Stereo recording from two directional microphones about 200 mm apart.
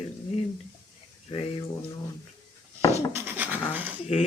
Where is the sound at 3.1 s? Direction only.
10° right (ahead or behind).